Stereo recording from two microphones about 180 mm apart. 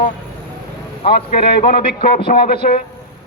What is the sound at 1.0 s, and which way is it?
Speech, 35° left (ahead or behind).